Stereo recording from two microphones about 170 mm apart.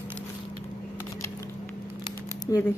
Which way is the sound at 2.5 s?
20° left (ahead or behind).